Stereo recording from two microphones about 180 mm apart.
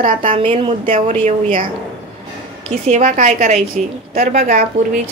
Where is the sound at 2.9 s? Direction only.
40° right (ahead or behind).